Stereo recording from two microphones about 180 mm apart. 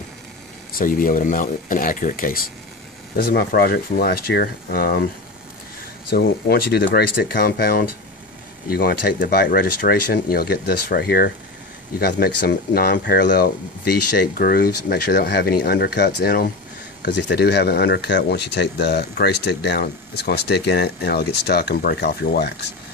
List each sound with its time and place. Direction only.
0.7 s speech: 50° left (ahead or behind)
6.0 s speech: 60° left (ahead or behind)